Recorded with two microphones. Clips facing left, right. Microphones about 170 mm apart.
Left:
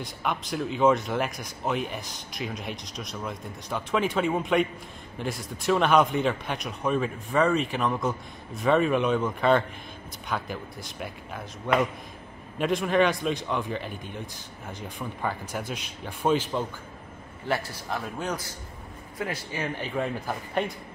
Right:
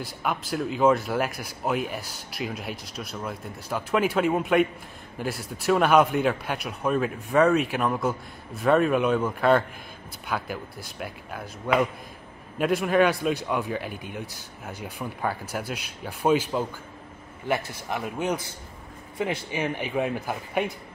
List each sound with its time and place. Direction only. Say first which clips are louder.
0.0 s a man's voice: right 1 dB; 5° right (ahead or behind)